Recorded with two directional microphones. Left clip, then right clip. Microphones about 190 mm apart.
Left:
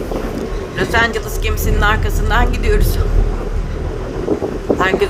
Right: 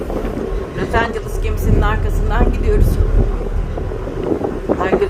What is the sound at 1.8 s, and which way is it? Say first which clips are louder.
Speech: left 6 dB; 5° right (ahead or behind).